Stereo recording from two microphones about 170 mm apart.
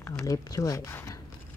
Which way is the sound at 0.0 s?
20° left (ahead or behind).